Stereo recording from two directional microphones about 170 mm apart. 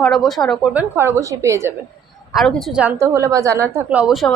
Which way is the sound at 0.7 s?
15° right (ahead or behind).